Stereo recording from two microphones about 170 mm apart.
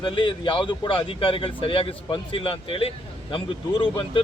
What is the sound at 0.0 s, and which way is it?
Speech, 30° left (ahead or behind).